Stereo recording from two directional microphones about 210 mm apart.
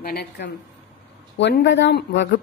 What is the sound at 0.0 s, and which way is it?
A woman's voice, 50° left (ahead or behind).